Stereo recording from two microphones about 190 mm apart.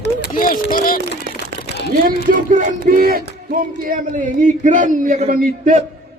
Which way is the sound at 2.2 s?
45° right (ahead or behind).